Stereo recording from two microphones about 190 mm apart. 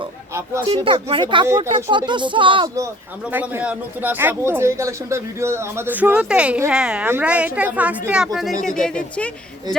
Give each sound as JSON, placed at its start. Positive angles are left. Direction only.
{"t": 0.8, "sound": "speech", "side_deg": -30}
{"t": 2.8, "sound": "speech", "side_deg": -10}